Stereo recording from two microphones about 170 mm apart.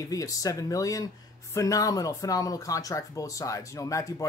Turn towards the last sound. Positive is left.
turn(degrees=20)  # may be behind; listen again after turning